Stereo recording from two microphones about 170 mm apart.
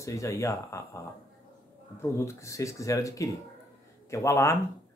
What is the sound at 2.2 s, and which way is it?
Speech, 15° left (ahead or behind).